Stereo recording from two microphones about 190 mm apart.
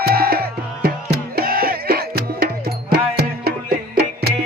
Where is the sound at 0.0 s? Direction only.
55° right (ahead or behind).